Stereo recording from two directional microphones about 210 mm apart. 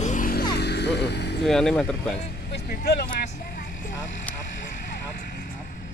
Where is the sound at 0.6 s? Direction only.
55° left (ahead or behind).